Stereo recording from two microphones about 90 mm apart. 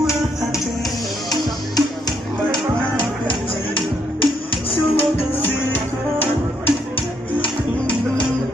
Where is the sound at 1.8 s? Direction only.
50° left (ahead or behind).